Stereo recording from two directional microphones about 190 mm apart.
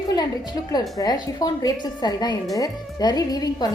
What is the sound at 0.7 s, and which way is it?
A woman's voice, 20° left (ahead or behind).